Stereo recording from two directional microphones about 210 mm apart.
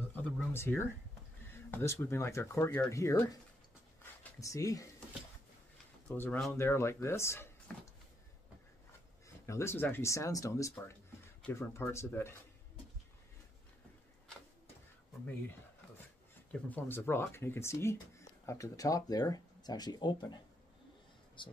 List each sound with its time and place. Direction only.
0.1 s a sound: 5° left (ahead or behind)
1.5 s speech: 10° left (ahead or behind)
6.0 s speech: 10° left (ahead or behind)
9.5 s speech: 10° left (ahead or behind)
16.5 s speech: 5° left (ahead or behind)
21.4 s speech: 20° left (ahead or behind)